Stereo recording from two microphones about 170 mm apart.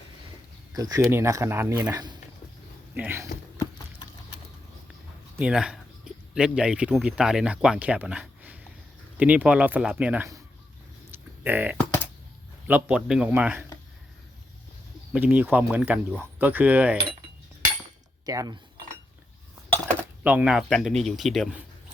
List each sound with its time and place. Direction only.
0.7 s speech: 20° right (ahead or behind)
5.4 s speech: 5° right (ahead or behind)
11.1 s a sound: 10° right (ahead or behind)
12.6 s speech: 10° right (ahead or behind)
15.1 s speech: 10° right (ahead or behind)
18.3 s cutlery: 20° right (ahead or behind)
20.2 s speech: 5° right (ahead or behind)